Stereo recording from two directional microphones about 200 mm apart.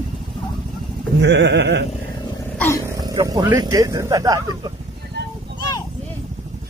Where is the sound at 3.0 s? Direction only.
20° right (ahead or behind).